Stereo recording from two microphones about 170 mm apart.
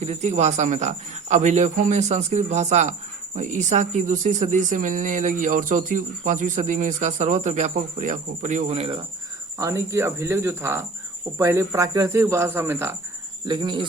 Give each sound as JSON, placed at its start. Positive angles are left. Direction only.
{"t": 0.0, "sound": "speech", "side_deg": -40}
{"t": 9.6, "sound": "speech", "side_deg": -15}
{"t": 13.5, "sound": "speech", "side_deg": -25}